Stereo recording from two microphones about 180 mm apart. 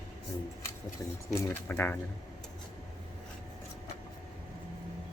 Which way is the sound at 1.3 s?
15° left (ahead or behind).